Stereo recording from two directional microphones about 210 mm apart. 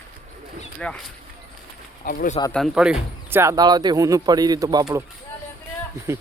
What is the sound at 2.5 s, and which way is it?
Speech, centre (ahead or behind).